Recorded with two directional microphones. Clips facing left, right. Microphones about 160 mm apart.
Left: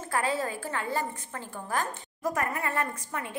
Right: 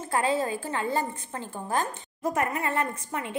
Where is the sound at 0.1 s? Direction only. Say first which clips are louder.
Right 3 dB; 20° right (ahead or behind).